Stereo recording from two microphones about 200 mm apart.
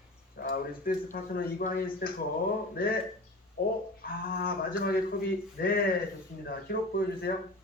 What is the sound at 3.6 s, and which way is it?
A man's voice, 45° left (ahead or behind).